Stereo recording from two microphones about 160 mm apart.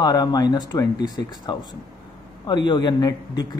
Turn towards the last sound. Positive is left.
turn(degrees=25)  # may be behind; listen again after turning